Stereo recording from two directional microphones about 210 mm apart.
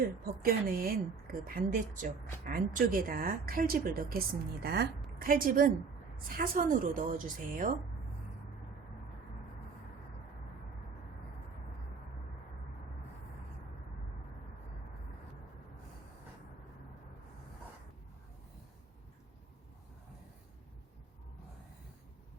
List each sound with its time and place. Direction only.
0.0 s a woman's voice: 45° right (ahead or behind)